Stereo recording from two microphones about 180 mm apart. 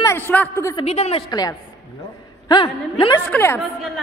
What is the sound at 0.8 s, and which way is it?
Speech, 35° left (ahead or behind).